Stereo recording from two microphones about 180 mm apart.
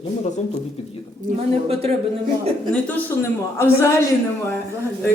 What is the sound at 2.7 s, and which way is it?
A man's voice, 10° left (ahead or behind).